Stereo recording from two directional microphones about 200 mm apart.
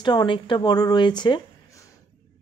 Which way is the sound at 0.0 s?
20° left (ahead or behind).